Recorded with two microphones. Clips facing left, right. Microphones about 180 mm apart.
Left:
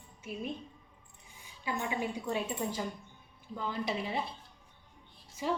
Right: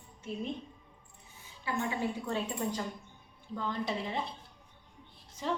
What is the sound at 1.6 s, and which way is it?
A woman's voice, 15° left (ahead or behind).